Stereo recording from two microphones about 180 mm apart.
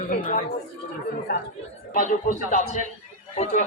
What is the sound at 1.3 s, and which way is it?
Speech, 60° left (ahead or behind).